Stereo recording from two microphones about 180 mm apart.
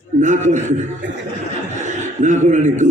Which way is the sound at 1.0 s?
85° right.